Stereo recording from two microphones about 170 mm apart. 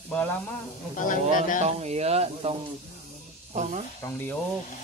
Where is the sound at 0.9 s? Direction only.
50° left (ahead or behind).